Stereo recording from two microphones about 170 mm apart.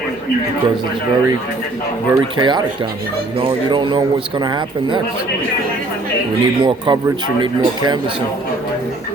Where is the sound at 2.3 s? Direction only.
25° right (ahead or behind).